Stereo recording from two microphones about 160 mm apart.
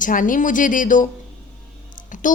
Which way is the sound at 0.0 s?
55° left (ahead or behind).